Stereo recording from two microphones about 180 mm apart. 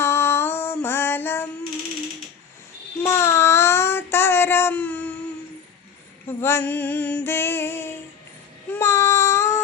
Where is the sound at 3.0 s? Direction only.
15° left (ahead or behind).